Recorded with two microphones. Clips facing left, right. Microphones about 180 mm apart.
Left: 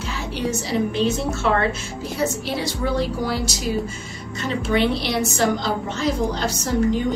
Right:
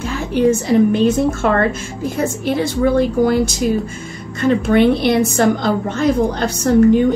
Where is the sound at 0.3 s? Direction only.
50° right (ahead or behind).